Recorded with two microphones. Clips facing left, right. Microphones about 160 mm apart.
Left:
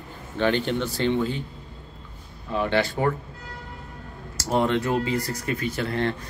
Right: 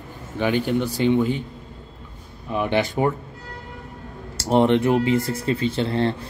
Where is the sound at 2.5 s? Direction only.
15° right (ahead or behind).